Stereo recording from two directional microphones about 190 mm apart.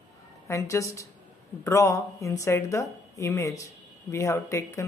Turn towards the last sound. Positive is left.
turn(degrees=15)  # may be behind; listen again after turning